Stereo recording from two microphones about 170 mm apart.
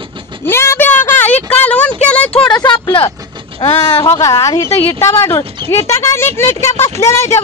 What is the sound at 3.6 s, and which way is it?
A woman's voice, 20° left (ahead or behind).